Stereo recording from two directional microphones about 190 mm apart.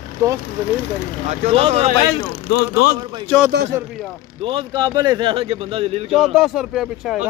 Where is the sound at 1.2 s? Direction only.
35° right (ahead or behind).